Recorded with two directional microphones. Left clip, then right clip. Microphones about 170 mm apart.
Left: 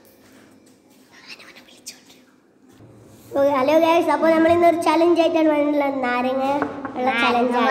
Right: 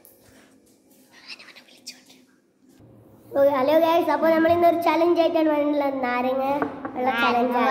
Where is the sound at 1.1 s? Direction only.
Centre (ahead or behind).